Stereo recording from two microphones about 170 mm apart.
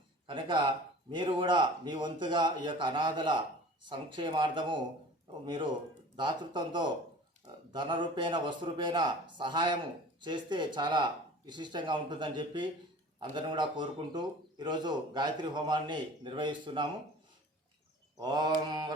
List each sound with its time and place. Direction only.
0.3 s a man's voice: 30° right (ahead or behind)
18.2 s a man's voice: 25° right (ahead or behind)